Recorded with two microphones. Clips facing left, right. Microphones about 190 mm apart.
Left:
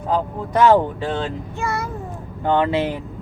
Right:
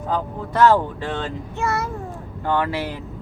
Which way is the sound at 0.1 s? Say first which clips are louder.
Left 4 dB; 15° left (ahead or behind).